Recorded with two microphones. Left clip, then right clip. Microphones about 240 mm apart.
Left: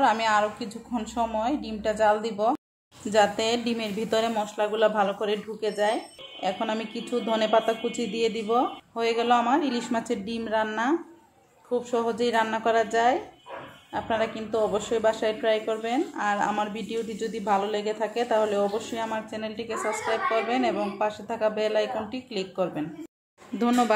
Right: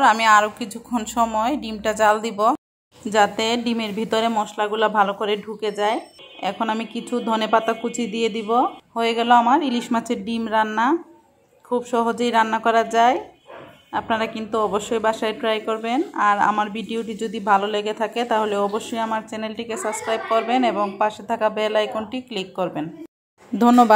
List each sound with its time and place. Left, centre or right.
0.0 s a woman's voice: centre
23.6 s speech: right